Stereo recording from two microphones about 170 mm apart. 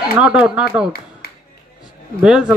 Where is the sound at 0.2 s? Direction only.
5° right (ahead or behind).